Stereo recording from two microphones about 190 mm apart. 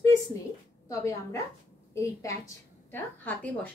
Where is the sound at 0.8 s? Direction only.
15° left (ahead or behind).